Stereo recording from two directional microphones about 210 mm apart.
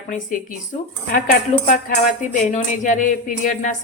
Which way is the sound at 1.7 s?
40° left (ahead or behind).